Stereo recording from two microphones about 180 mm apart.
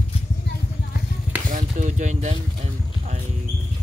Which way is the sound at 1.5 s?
45° right (ahead or behind).